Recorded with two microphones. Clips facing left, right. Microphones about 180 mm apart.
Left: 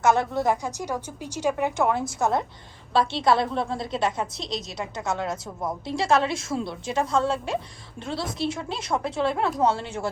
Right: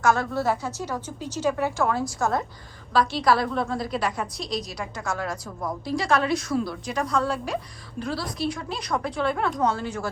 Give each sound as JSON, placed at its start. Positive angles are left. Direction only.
{"t": 0.0, "sound": "a woman's voice", "side_deg": 20}